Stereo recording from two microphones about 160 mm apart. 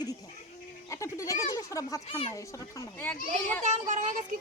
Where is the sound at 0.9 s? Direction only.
20° left (ahead or behind).